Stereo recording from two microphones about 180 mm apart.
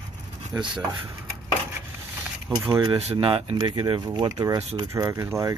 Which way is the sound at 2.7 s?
30° right (ahead or behind).